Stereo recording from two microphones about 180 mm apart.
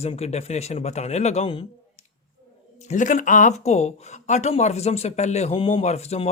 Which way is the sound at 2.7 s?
40° left (ahead or behind).